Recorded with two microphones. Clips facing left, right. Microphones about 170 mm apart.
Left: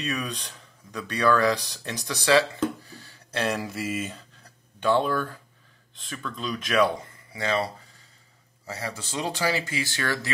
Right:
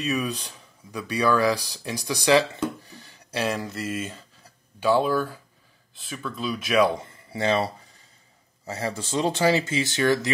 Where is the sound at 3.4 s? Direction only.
Centre (ahead or behind).